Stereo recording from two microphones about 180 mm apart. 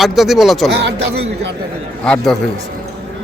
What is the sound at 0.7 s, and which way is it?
Speech, 70° right (ahead or behind).